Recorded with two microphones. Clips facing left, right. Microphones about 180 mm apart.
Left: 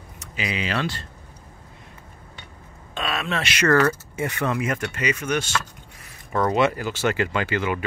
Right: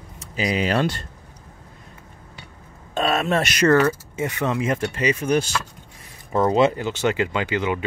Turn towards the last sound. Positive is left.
turn(degrees=-20)  # may be behind; listen again after turning